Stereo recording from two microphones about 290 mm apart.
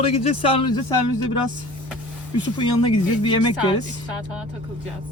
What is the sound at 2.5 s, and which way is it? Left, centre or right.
Speech, centre.